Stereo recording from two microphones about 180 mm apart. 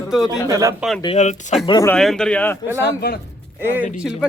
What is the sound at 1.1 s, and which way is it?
Speech, 40° left (ahead or behind).